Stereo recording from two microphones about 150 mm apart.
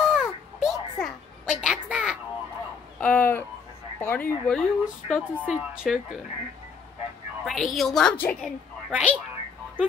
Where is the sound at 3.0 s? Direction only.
10° left (ahead or behind).